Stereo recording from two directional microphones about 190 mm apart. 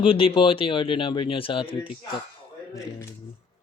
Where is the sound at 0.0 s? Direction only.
30° left (ahead or behind).